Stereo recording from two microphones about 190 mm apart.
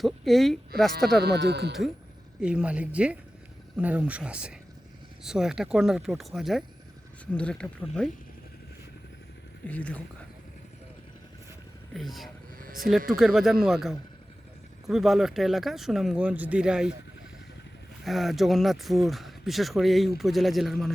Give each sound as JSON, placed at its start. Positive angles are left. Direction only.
{"t": 0.0, "sound": "speech", "side_deg": 0}
{"t": 1.2, "sound": "speech", "side_deg": -60}
{"t": 2.4, "sound": "speech", "side_deg": -5}
{"t": 9.6, "sound": "speech", "side_deg": 5}
{"t": 11.9, "sound": "speech", "side_deg": 0}
{"t": 12.5, "sound": "a sound", "side_deg": -50}
{"t": 13.1, "sound": "speech", "side_deg": 0}
{"t": 18.0, "sound": "speech", "side_deg": 0}